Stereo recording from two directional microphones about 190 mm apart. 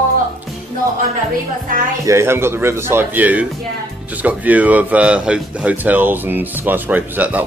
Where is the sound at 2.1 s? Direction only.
15° right (ahead or behind).